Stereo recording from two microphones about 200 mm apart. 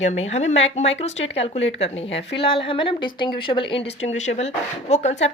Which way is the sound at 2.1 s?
25° left (ahead or behind).